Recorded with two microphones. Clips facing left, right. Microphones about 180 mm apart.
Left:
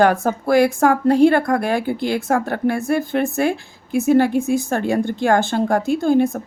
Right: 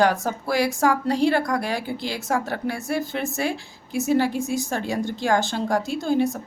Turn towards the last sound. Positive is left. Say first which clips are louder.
# left 6 dB
turn(degrees=50)  # may be behind; listen again after turning